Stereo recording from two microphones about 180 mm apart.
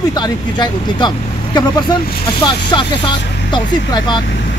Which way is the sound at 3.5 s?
25° left (ahead or behind).